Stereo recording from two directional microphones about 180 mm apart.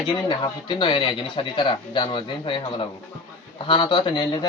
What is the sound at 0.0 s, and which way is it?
Speech, 25° left (ahead or behind).